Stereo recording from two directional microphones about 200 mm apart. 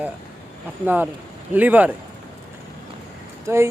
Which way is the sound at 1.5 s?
10° right (ahead or behind).